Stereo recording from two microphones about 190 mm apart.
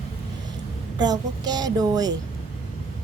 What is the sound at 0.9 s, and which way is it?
Speech, 20° right (ahead or behind).